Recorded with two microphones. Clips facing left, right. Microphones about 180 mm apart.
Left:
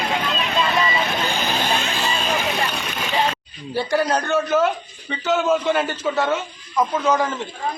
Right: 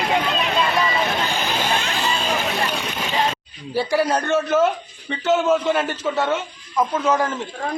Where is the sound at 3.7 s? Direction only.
5° right (ahead or behind).